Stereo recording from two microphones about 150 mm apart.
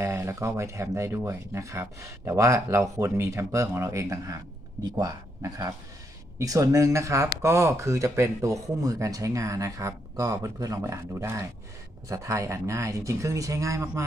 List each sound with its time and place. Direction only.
0.0 s speech: 20° right (ahead or behind)